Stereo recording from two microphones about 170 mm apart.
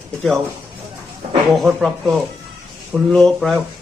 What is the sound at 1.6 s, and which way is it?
Speech, centre (ahead or behind).